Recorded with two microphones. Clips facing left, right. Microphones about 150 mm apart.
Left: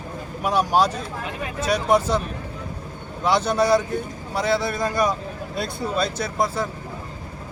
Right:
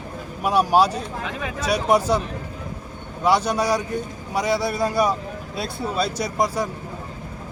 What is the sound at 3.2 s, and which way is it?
Speech, 10° right (ahead or behind).